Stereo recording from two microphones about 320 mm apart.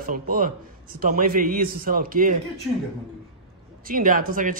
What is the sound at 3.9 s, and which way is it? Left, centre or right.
Speech, right.